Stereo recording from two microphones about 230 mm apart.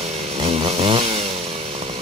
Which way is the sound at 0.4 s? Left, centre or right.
Right.